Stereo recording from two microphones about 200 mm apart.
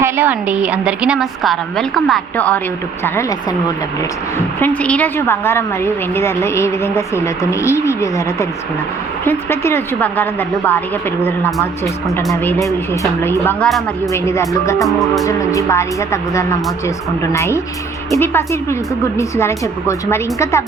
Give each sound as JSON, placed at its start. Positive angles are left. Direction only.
{"t": 0.0, "sound": "a woman's voice", "side_deg": -10}
{"t": 4.8, "sound": "a woman's voice", "side_deg": 5}
{"t": 14.1, "sound": "a woman's voice", "side_deg": 15}
{"t": 14.8, "sound": "a woman's voice", "side_deg": 0}
{"t": 15.2, "sound": "a woman's voice", "side_deg": 15}